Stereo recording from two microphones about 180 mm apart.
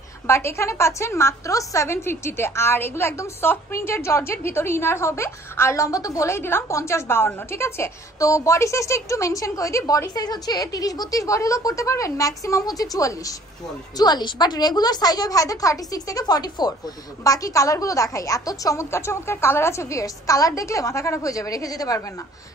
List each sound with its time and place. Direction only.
0.3 s a woman's voice: 15° left (ahead or behind)